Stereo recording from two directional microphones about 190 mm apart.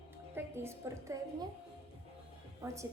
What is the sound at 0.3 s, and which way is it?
A woman's voice, 10° right (ahead or behind).